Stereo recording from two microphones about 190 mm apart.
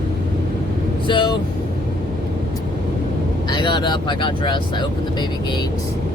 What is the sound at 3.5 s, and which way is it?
Speech, 25° left (ahead or behind).